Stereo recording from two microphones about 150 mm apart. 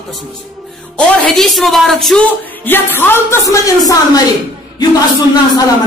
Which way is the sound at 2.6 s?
15° left (ahead or behind).